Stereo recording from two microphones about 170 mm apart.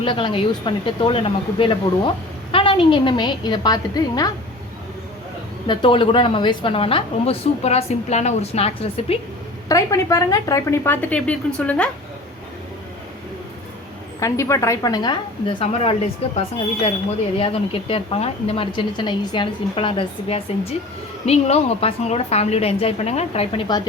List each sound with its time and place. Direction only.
0.0 s speech: 30° left (ahead or behind)
5.6 s a woman's voice: 30° left (ahead or behind)
9.6 s a woman's voice: 20° left (ahead or behind)
14.2 s speech: 20° left (ahead or behind); by 16.0 s 35° left (ahead or behind)
17.3 s a woman's voice: 30° left (ahead or behind)
23.6 s speech: 25° left (ahead or behind)